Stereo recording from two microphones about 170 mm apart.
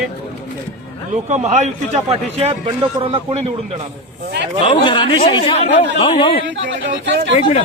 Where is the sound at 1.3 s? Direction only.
45° right (ahead or behind).